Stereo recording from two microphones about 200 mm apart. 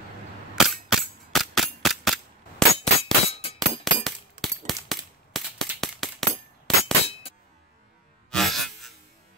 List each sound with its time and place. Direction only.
0.6 s cap gun: centre (ahead or behind)
2.6 s clang: centre (ahead or behind)
3.0 s a sound: 30° left (ahead or behind)
3.8 s cap gun: centre (ahead or behind)
6.7 s clang: centre (ahead or behind)
8.3 s music: centre (ahead or behind)